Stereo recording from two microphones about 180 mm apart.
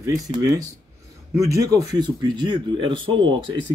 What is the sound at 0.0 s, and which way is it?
Speech, 20° right (ahead or behind).